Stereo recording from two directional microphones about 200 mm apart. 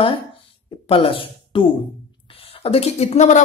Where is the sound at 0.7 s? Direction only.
25° left (ahead or behind).